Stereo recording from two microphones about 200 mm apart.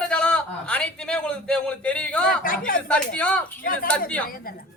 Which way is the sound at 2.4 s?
45° left (ahead or behind).